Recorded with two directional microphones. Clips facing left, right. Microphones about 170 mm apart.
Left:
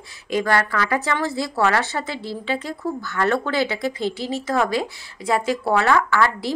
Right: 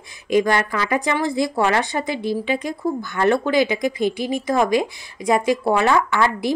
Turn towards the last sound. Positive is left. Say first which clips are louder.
# right 1 dB
turn(degrees=-20)  # may be behind; listen again after turning